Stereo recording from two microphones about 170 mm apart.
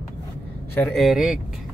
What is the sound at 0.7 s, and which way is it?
Speech, 5° left (ahead or behind).